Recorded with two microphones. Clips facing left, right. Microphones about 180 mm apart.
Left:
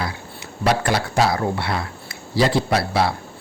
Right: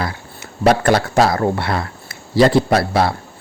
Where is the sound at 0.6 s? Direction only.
50° right (ahead or behind).